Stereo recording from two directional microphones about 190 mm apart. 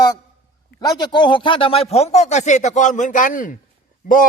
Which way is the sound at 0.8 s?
20° left (ahead or behind).